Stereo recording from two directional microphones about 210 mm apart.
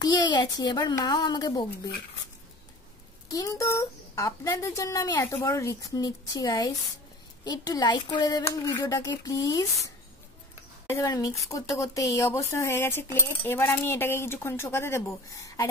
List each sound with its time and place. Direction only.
0.0 s a child's voice: 20° left (ahead or behind)
3.3 s speech: 15° left (ahead or behind)